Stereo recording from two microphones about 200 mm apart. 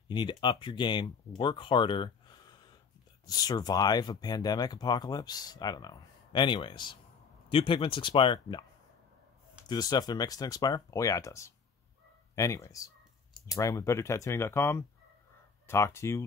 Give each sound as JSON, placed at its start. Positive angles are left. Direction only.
{"t": 0.1, "sound": "speech", "side_deg": 25}
{"t": 9.7, "sound": "speech", "side_deg": 20}